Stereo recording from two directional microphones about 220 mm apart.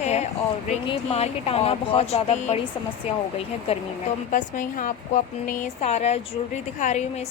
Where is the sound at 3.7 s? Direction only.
25° left (ahead or behind).